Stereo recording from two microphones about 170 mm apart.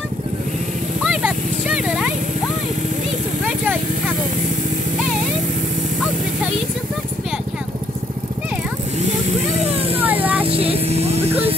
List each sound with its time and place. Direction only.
1.0 s clip-clop: 5° right (ahead or behind)
9.7 s vehicle: 35° right (ahead or behind)
10.0 s vehicle: 10° right (ahead or behind)
10.4 s vehicle: 35° right (ahead or behind)